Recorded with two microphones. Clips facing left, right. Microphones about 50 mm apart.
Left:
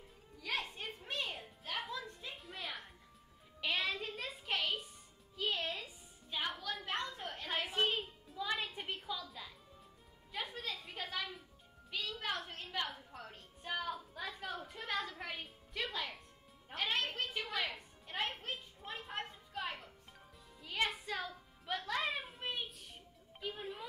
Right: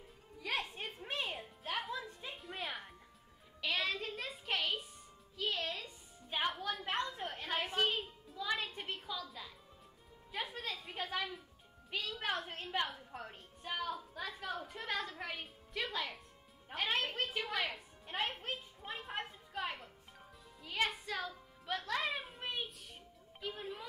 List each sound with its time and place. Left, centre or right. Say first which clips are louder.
0.9 s music: right 2 dB; centre
2.3 s music: right 4 dB; centre
6.3 s music: right 3 dB; right
7.1 s a sound: right 2 dB; centre
10.3 s music: right 1 dB; centre
11.9 s music: right 2 dB; right
13.6 s music: even; centre
21.6 s a sound: even; centre